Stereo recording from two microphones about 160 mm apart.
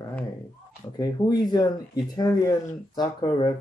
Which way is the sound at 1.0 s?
25° left (ahead or behind).